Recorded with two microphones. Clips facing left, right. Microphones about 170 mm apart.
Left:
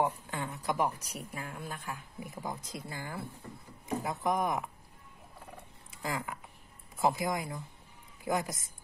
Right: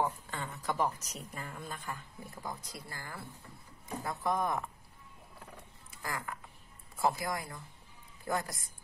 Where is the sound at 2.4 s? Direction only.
20° left (ahead or behind).